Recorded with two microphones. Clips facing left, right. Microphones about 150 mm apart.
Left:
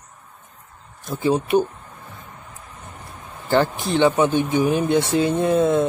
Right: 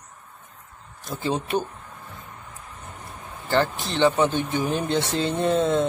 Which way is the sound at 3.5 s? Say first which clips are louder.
Left 4 dB; 15° left (ahead or behind).